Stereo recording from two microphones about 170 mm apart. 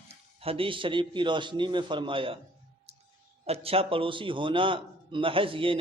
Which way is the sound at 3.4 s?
35° right (ahead or behind).